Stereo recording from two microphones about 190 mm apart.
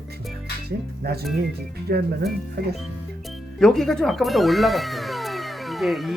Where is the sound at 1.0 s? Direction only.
55° right (ahead or behind).